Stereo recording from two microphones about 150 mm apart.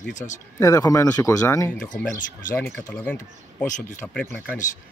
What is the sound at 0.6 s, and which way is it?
Speech, 20° left (ahead or behind).